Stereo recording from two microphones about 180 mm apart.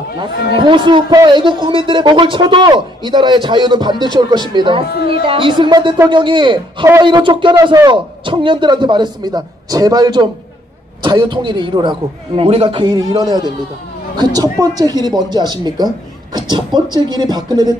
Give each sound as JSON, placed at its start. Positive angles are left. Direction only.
{"t": 0.2, "sound": "a man's voice", "side_deg": -25}